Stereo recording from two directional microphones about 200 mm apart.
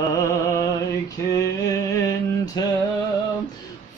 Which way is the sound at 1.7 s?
15° left (ahead or behind).